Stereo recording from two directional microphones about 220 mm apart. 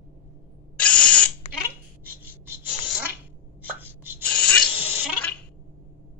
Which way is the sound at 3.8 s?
10° right (ahead or behind).